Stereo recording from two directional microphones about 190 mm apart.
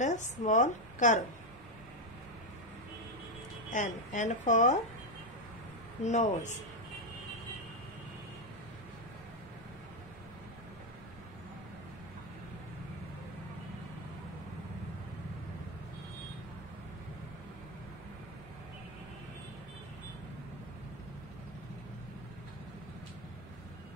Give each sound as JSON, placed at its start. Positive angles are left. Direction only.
{"t": 0.0, "sound": "a woman's voice", "side_deg": 40}
{"t": 3.7, "sound": "a woman's voice", "side_deg": 40}
{"t": 6.0, "sound": "a woman's voice", "side_deg": 40}